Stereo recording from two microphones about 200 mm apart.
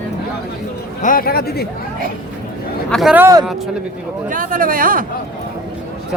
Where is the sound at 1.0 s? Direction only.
45° left (ahead or behind).